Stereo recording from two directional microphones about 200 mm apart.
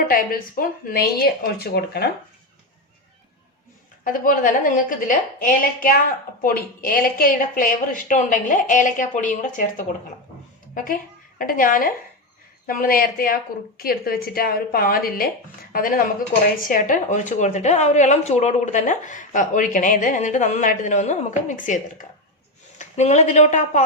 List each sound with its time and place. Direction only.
0.1 s a woman's voice: 45° left (ahead or behind)
4.0 s a woman's voice: 45° left (ahead or behind)
11.3 s a woman's voice: 45° left (ahead or behind)